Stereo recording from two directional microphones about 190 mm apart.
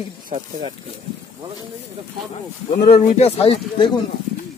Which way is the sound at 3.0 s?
35° left (ahead or behind).